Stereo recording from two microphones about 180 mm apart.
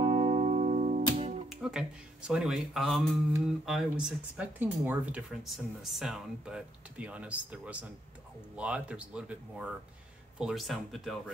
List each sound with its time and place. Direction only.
0.0 s music: 35° right (ahead or behind)
1.5 s speech: 5° right (ahead or behind)